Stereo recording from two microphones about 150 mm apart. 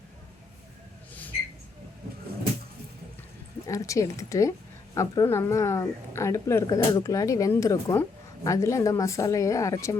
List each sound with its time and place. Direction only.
3.7 s speech: 20° left (ahead or behind)